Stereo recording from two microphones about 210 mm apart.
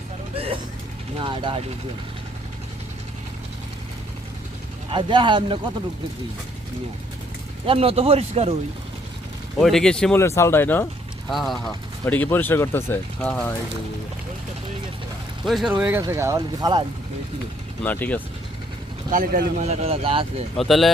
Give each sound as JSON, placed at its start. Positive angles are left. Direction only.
{"t": 0.3, "sound": "vehicle", "side_deg": -25}
{"t": 1.1, "sound": "speech", "side_deg": -25}
{"t": 4.9, "sound": "speech", "side_deg": -25}
{"t": 7.7, "sound": "speech", "side_deg": -25}
{"t": 9.6, "sound": "speech", "side_deg": 0}
{"t": 11.3, "sound": "speech", "side_deg": 0}
{"t": 15.4, "sound": "speech", "side_deg": 0}
{"t": 17.8, "sound": "speech", "side_deg": 10}
{"t": 19.1, "sound": "speech", "side_deg": -45}
{"t": 20.6, "sound": "speech", "side_deg": 0}